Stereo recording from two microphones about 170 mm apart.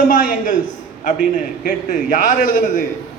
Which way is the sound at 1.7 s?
50° left (ahead or behind).